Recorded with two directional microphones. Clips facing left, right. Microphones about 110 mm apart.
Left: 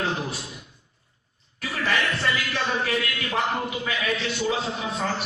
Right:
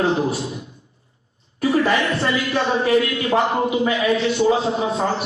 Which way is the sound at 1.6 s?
25° right (ahead or behind).